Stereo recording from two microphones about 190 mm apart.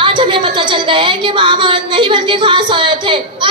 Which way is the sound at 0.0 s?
25° right (ahead or behind).